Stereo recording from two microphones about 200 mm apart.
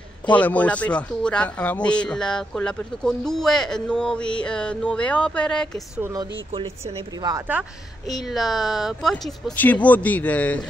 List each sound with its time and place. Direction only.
0.3 s speech: 10° left (ahead or behind)
5.9 s speech: 15° right (ahead or behind)
8.1 s speech: centre (ahead or behind)